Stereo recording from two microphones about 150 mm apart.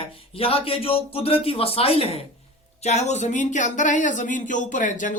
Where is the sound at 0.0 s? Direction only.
40° left (ahead or behind).